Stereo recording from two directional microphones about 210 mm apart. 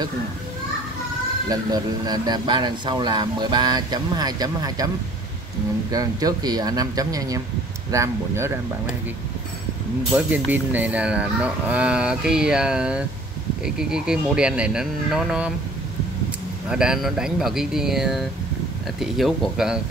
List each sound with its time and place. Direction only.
1.5 s a man's voice: 20° right (ahead or behind)
10.1 s speech: 5° right (ahead or behind)
16.6 s speech: 5° right (ahead or behind)